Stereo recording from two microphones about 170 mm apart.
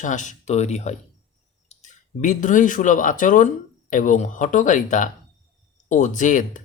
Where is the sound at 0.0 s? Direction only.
45° left (ahead or behind).